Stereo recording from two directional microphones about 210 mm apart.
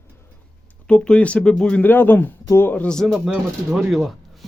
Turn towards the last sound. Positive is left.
turn(degrees=0)  # may be behind; listen again after turning